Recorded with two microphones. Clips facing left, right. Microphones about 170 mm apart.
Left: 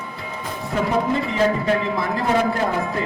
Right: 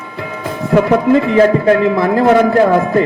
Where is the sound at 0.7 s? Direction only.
70° right (ahead or behind).